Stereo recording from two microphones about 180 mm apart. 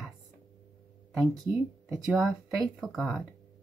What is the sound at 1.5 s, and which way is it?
Speech, 15° right (ahead or behind).